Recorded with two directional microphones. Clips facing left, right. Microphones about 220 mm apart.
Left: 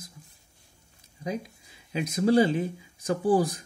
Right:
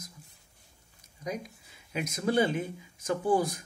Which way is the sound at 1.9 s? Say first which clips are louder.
Left 7 dB; 30° left (ahead or behind).